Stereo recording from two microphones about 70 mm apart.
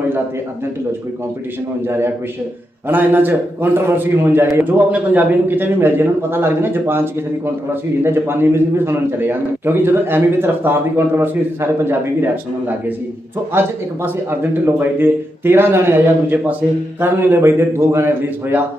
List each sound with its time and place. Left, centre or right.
1.9 s a man's voice: right